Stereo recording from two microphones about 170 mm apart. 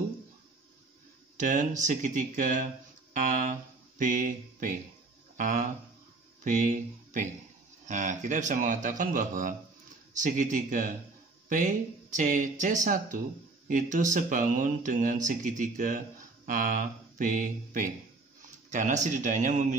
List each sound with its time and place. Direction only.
1.3 s speech: 50° right (ahead or behind)